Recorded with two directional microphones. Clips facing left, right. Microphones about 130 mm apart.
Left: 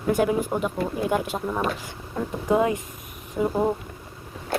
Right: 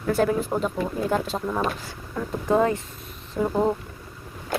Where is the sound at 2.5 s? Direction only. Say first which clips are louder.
Right 1 dB; 15° left (ahead or behind).